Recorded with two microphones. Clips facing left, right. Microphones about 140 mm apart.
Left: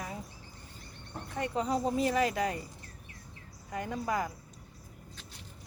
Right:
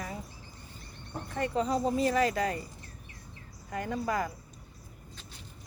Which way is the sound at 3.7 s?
15° left (ahead or behind).